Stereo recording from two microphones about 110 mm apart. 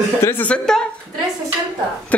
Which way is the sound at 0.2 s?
20° left (ahead or behind).